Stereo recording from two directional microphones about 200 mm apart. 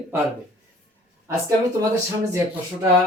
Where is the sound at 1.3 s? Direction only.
15° right (ahead or behind).